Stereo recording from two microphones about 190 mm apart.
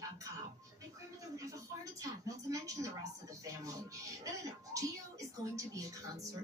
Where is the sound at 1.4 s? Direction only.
20° right (ahead or behind).